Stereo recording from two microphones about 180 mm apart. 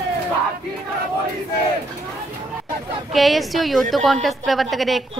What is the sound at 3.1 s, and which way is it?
Speech, centre (ahead or behind).